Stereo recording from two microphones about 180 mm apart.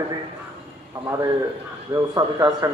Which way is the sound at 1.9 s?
20° right (ahead or behind).